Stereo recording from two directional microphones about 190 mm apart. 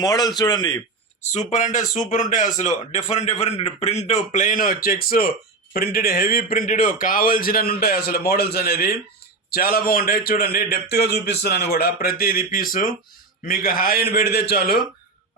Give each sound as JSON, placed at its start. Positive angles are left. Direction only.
{"t": 0.0, "sound": "a man's voice", "side_deg": 20}
{"t": 1.3, "sound": "a man's voice", "side_deg": 40}